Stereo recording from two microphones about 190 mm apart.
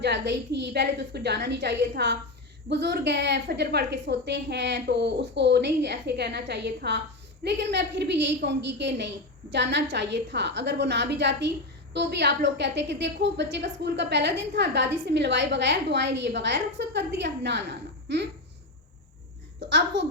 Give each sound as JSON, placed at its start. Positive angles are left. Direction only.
{"t": 0.0, "sound": "a woman's voice", "side_deg": -65}
{"t": 19.5, "sound": "a woman's voice", "side_deg": -70}